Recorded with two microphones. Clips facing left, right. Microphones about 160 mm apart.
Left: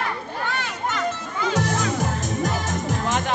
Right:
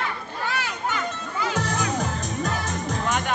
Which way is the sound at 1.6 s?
90° left.